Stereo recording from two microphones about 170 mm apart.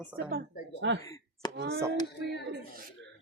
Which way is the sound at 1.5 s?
65° right (ahead or behind).